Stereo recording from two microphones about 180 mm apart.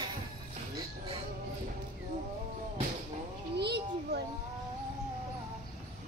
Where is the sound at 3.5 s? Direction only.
65° right (ahead or behind).